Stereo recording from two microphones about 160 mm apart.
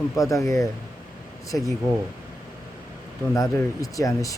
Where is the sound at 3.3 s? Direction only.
20° left (ahead or behind).